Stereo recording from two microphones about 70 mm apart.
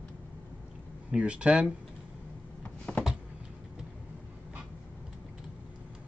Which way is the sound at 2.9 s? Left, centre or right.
Left.